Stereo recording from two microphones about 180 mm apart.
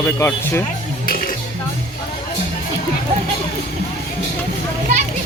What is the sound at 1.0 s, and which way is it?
Music, 50° left (ahead or behind).